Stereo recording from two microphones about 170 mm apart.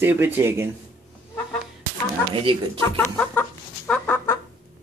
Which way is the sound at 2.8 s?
10° left (ahead or behind).